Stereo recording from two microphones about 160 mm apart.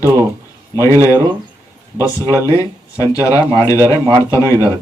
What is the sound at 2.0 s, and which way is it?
Speech, 20° left (ahead or behind).